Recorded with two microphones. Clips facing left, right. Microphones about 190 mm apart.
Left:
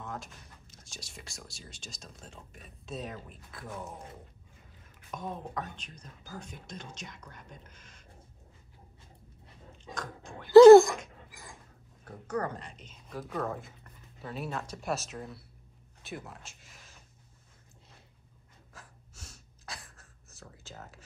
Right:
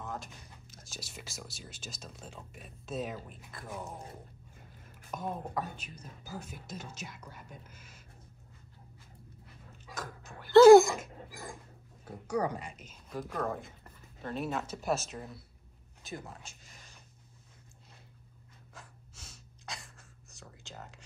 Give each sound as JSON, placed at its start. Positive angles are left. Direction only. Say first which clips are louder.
{"t": 0.0, "sound": "speech", "louder": "even", "side_deg": 0}
{"t": 5.1, "sound": "speech", "louder": "right 1 dB", "side_deg": -5}
{"t": 9.9, "sound": "a sound", "louder": "left 2 dB", "side_deg": -5}
{"t": 11.1, "sound": "rodents", "louder": "right 7 dB", "side_deg": -50}
{"t": 12.0, "sound": "speech", "louder": "right 2 dB", "side_deg": -10}
{"t": 18.7, "sound": "gasp", "louder": "right 1 dB", "side_deg": 0}